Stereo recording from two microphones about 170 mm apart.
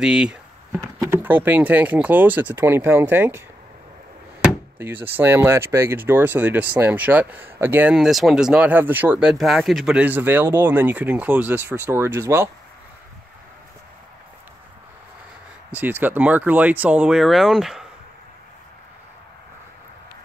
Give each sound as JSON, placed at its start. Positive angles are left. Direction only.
{"t": 0.0, "sound": "speech", "side_deg": -5}
{"t": 4.7, "sound": "speech", "side_deg": -10}
{"t": 15.7, "sound": "speech", "side_deg": -10}